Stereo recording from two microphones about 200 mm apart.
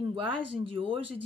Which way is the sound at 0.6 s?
25° right (ahead or behind).